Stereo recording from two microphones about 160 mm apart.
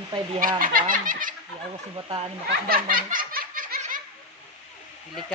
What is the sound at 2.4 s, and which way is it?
Snicker, 65° right (ahead or behind).